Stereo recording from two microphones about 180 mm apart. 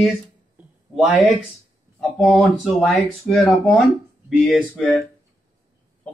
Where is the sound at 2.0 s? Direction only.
5° left (ahead or behind).